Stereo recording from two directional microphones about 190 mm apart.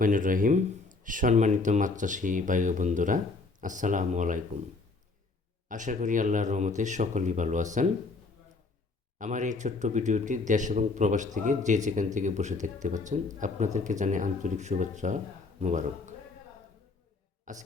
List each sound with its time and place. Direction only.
0.0 s speech: 45° right (ahead or behind)
5.6 s speech: 45° right (ahead or behind)
9.1 s a man's voice: 40° right (ahead or behind)
17.4 s a sound: 40° right (ahead or behind)